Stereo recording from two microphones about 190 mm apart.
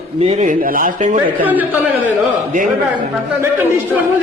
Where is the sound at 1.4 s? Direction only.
10° right (ahead or behind).